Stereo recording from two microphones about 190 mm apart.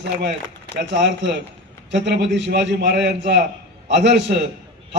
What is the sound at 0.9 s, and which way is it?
A man's voice, 65° right (ahead or behind).